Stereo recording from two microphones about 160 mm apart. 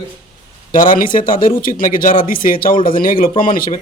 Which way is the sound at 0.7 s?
60° left (ahead or behind).